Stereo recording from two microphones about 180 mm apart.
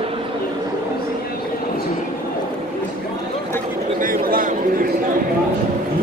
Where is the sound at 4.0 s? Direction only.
50° right (ahead or behind).